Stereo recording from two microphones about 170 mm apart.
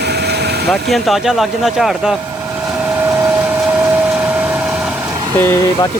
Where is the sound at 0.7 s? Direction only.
Centre (ahead or behind).